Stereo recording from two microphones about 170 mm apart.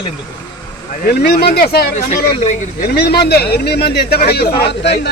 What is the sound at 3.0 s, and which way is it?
Speech, 70° left (ahead or behind).